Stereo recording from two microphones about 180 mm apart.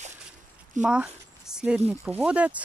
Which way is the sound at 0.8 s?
5° right (ahead or behind).